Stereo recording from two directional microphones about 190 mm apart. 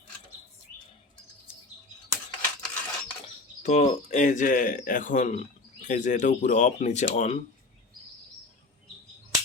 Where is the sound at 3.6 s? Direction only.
35° left (ahead or behind).